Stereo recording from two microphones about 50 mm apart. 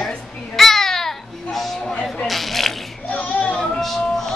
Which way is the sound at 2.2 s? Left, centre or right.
Centre.